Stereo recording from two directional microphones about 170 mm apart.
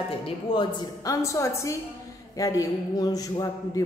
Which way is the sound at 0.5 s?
20° left (ahead or behind).